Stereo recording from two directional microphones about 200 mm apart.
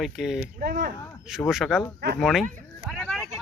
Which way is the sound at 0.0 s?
Centre (ahead or behind).